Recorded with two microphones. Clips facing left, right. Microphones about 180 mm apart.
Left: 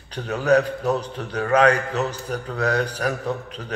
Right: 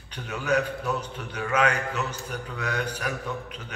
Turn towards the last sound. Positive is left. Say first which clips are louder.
# left 6 dB
turn(degrees=35)  # may be behind; listen again after turning